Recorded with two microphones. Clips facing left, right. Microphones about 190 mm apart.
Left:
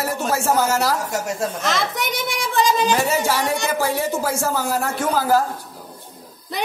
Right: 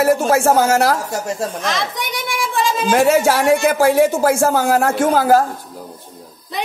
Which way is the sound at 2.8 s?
60° right (ahead or behind).